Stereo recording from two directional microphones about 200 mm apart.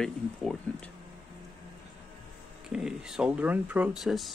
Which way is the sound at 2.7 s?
5° right (ahead or behind).